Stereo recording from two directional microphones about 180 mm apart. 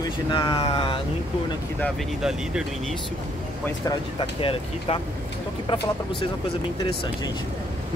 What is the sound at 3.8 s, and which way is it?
Speech, 30° left (ahead or behind).